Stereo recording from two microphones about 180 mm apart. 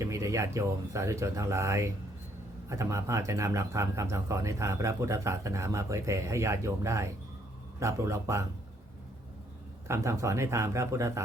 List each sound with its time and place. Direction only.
0.0 s speech: 15° right (ahead or behind)
9.8 s speech: 15° right (ahead or behind)